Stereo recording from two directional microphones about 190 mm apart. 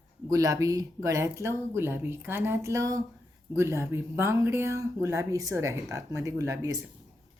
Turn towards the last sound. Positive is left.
turn(degrees=-20)  # may be behind; listen again after turning